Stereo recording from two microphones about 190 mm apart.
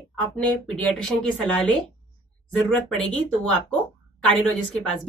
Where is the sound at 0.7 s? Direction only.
5° left (ahead or behind).